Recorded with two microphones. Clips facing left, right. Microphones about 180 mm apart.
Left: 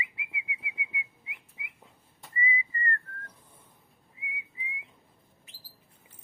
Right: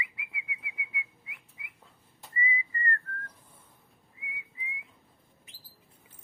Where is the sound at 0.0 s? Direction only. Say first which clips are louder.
Left 1 dB; 25° left (ahead or behind).